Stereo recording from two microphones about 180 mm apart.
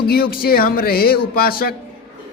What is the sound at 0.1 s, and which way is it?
A man's voice, 55° left (ahead or behind).